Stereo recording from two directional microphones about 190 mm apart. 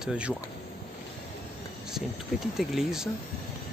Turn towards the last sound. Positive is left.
turn(degrees=0)  # may be behind; listen again after turning